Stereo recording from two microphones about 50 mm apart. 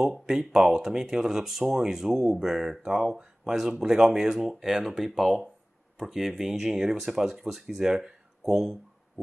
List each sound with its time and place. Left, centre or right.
0.0 s speech: centre